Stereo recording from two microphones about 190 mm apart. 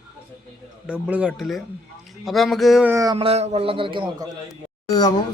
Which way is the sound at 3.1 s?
30° right (ahead or behind).